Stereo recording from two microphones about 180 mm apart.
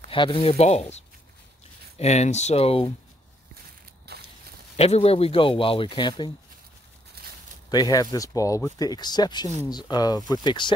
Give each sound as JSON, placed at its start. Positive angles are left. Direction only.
{"t": 0.1, "sound": "speech", "side_deg": 30}
{"t": 4.1, "sound": "a sound", "side_deg": -65}
{"t": 4.7, "sound": "speech", "side_deg": 35}
{"t": 7.7, "sound": "speech", "side_deg": 20}